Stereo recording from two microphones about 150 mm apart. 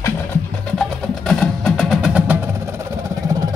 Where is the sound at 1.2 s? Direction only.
5° left (ahead or behind).